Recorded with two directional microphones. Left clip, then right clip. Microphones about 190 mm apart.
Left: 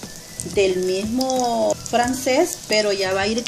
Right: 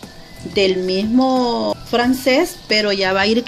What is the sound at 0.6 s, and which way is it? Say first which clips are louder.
Speech: right 3 dB; 40° right (ahead or behind).